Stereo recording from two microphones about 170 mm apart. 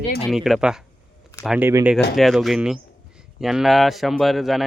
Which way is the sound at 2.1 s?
Centre (ahead or behind).